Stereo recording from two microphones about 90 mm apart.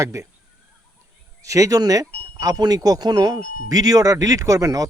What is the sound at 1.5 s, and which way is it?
Speech, 40° right (ahead or behind).